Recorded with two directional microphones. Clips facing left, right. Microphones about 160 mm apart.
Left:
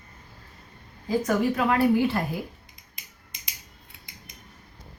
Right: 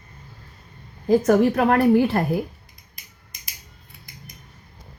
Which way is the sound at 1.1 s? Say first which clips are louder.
Right 7 dB; 50° right (ahead or behind).